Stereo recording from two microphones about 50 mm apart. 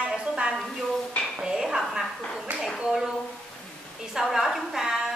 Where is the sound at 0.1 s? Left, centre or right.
Centre.